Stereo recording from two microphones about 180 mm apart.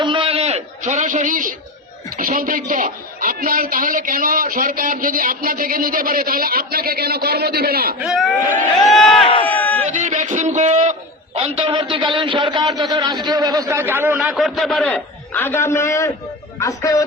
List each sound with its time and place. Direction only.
0.0 s a sound: 30° right (ahead or behind); by 1.5 s 50° right (ahead or behind)
2.1 s a man's voice: 50° right (ahead or behind)
7.9 s speech: centre (ahead or behind)
9.1 s speech: 30° left (ahead or behind)
9.5 s crowd: 10° left (ahead or behind)
9.9 s a man's voice: 40° right (ahead or behind)
11.3 s a man's voice: 30° right (ahead or behind); by 17.0 s 20° left (ahead or behind)